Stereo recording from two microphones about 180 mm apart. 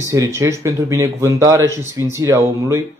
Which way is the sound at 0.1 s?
15° right (ahead or behind).